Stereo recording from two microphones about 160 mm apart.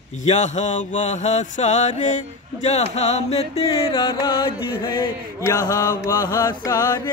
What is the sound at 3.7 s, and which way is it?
Music, 30° left (ahead or behind).